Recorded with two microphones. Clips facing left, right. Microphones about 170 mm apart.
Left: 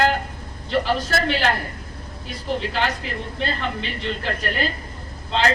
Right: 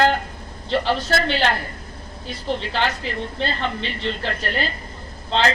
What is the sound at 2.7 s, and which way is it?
A woman's voice, 30° right (ahead or behind).